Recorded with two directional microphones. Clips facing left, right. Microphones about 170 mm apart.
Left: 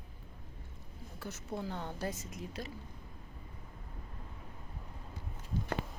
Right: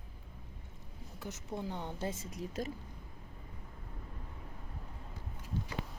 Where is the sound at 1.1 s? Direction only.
20° right (ahead or behind); by 2.7 s 40° right (ahead or behind).